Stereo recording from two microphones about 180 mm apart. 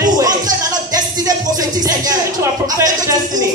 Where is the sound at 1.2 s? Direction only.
20° right (ahead or behind).